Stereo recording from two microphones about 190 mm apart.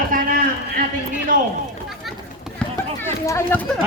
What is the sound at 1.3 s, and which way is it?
Speech, 45° right (ahead or behind).